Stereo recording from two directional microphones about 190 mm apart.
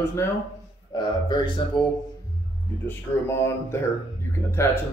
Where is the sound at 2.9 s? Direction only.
15° left (ahead or behind).